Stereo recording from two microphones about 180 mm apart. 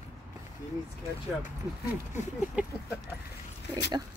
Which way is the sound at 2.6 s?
10° right (ahead or behind).